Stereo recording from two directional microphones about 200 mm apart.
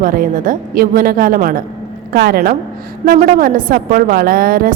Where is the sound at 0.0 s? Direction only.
45° right (ahead or behind).